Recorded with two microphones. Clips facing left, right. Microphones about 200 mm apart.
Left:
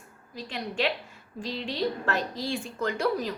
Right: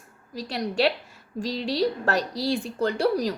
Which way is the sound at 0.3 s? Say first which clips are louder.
Right 5 dB; 40° right (ahead or behind).